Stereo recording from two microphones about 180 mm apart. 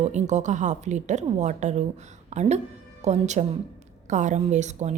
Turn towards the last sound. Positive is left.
turn(degrees=-40)  # may be behind; listen again after turning